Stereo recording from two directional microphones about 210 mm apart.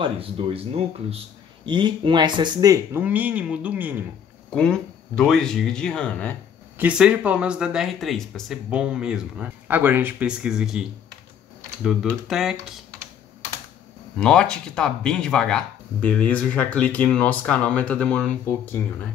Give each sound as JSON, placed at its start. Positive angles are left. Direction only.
{"t": 0.0, "sound": "speech", "side_deg": -25}
{"t": 4.5, "sound": "speech", "side_deg": 5}
{"t": 6.8, "sound": "speech", "side_deg": -5}
{"t": 11.8, "sound": "speech", "side_deg": 0}
{"t": 14.1, "sound": "speech", "side_deg": 5}